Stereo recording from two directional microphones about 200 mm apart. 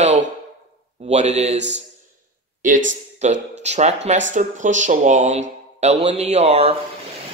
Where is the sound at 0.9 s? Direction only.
35° right (ahead or behind).